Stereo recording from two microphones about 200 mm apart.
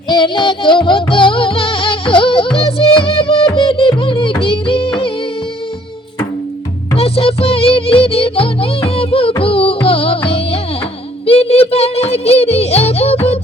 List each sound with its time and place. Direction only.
0.1 s music: 25° left (ahead or behind)
6.9 s music: 30° left (ahead or behind)